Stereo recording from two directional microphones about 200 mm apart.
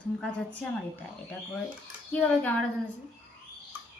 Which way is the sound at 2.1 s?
5° left (ahead or behind).